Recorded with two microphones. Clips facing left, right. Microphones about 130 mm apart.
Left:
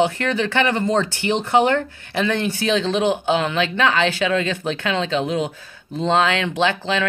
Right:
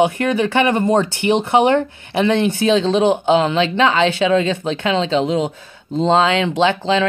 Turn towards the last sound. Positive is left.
turn(degrees=-25)  # may be behind; listen again after turning